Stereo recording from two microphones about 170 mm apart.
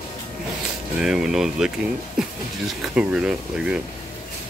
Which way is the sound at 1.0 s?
5° right (ahead or behind).